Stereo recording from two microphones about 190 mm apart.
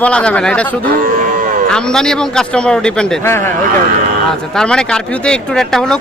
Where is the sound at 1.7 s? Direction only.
5° left (ahead or behind).